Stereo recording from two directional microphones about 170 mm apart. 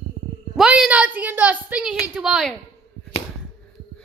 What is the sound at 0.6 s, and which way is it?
A woman's voice, 5° right (ahead or behind).